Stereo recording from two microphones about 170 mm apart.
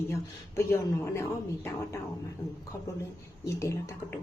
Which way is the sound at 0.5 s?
15° left (ahead or behind).